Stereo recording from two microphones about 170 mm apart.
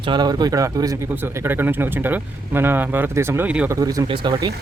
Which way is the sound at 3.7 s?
20° right (ahead or behind).